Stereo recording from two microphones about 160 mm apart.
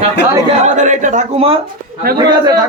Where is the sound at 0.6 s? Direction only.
50° right (ahead or behind).